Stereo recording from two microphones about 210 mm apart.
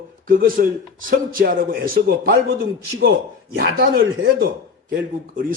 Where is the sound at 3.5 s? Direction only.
45° right (ahead or behind).